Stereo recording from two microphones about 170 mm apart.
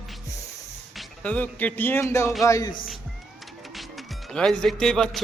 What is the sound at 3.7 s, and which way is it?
Music, centre (ahead or behind).